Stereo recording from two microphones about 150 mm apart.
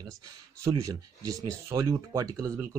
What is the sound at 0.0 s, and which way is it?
Speech, 25° right (ahead or behind).